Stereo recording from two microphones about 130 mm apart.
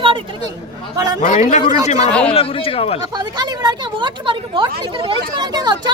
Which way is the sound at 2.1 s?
10° left (ahead or behind).